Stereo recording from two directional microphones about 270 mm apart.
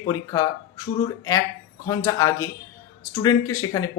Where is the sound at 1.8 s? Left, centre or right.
Centre.